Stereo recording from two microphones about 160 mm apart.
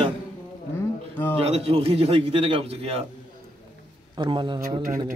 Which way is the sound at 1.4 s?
40° right (ahead or behind).